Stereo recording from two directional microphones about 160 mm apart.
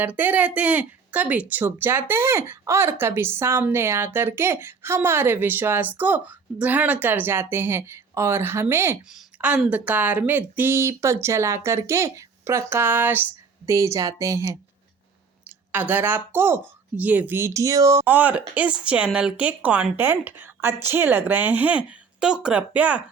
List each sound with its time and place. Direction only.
0.0 s speech: 10° right (ahead or behind)